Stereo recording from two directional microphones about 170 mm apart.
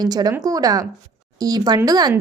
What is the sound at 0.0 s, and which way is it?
Speech, 25° right (ahead or behind).